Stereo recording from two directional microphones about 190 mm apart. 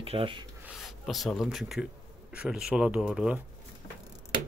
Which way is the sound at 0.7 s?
Centre (ahead or behind).